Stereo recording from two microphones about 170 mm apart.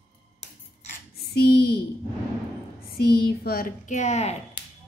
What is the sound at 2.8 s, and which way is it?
Speech, 65° left (ahead or behind).